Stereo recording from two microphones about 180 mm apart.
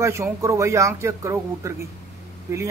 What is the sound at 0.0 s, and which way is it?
Speech, 15° right (ahead or behind).